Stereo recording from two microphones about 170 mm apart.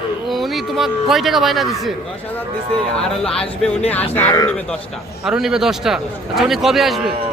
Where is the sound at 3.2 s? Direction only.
5° left (ahead or behind).